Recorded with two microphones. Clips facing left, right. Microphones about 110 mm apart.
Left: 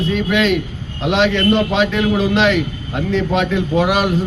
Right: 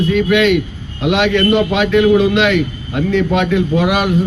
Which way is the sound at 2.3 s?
35° left (ahead or behind).